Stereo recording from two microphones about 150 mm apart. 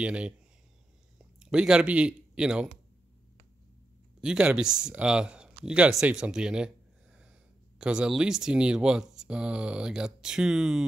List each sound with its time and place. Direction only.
0.0 s speech: 5° right (ahead or behind)
4.2 s speech: 5° right (ahead or behind)